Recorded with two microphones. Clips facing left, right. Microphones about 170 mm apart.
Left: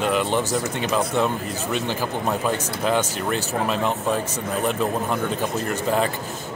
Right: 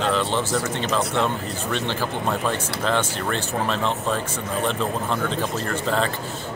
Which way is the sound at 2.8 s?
10° left (ahead or behind).